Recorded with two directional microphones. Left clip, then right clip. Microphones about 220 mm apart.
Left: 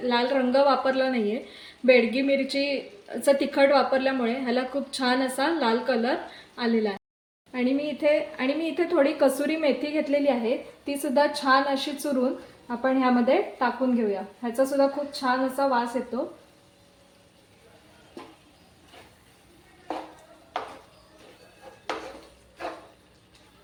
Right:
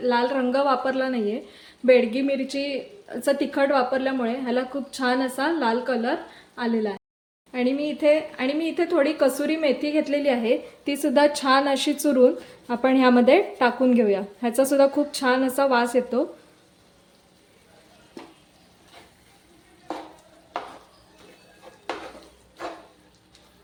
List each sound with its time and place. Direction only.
0.0 s a woman's voice: 10° right (ahead or behind); by 16.2 s 40° right (ahead or behind)